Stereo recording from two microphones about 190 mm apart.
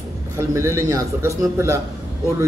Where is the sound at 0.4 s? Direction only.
15° right (ahead or behind).